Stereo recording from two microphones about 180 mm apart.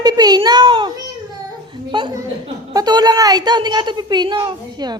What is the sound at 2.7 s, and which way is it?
A woman's voice, 20° right (ahead or behind).